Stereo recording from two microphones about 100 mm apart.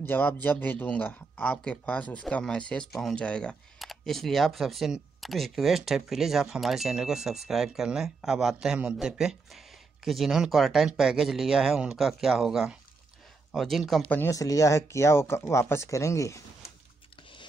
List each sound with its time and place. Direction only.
0.0 s a man's voice: 20° left (ahead or behind); by 14.0 s centre (ahead or behind)
14.0 s speech: 20° left (ahead or behind)
14.3 s speech: 35° left (ahead or behind)